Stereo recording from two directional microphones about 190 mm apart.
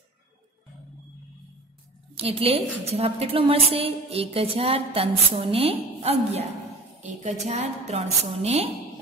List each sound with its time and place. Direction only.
2.1 s a woman's voice: 30° right (ahead or behind)